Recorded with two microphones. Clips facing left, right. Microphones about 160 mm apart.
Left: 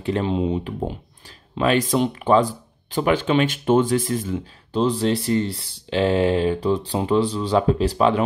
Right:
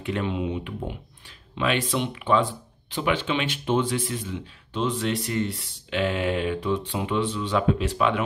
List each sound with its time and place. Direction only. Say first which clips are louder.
0.0 s speech: left 5 dB; 35° left (ahead or behind)